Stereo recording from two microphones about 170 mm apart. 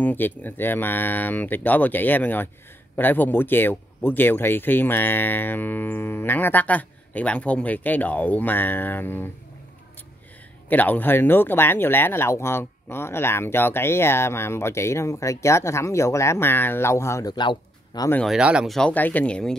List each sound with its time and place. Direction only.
0.0 s speech: 10° left (ahead or behind)
10.7 s speech: 10° left (ahead or behind)
18.1 s speech: centre (ahead or behind)